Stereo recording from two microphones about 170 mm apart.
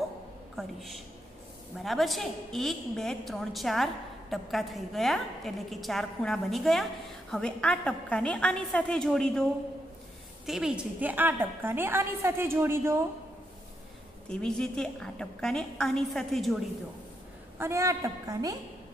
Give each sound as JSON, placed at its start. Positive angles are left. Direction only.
{"t": 0.6, "sound": "a woman's voice", "side_deg": 0}
{"t": 14.3, "sound": "a woman's voice", "side_deg": 5}
{"t": 17.6, "sound": "a woman's voice", "side_deg": -15}